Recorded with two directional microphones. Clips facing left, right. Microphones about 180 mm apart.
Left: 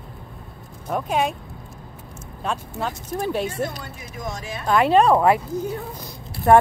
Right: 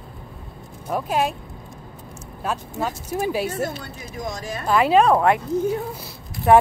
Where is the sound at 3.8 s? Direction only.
40° right (ahead or behind).